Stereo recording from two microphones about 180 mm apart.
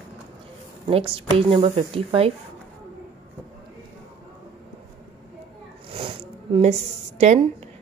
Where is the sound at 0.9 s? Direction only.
30° right (ahead or behind).